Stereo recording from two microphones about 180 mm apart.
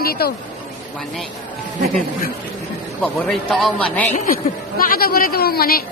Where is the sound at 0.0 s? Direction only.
55° left (ahead or behind).